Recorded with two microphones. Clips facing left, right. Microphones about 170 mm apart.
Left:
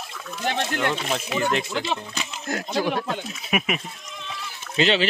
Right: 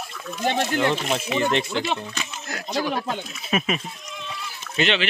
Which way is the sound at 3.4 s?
10° left (ahead or behind).